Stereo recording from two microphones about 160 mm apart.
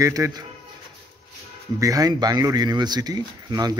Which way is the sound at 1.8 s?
20° right (ahead or behind).